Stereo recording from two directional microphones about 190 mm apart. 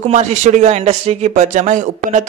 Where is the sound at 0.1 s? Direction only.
40° right (ahead or behind).